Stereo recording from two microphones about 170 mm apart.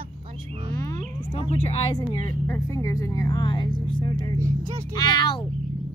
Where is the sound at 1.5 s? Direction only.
35° left (ahead or behind).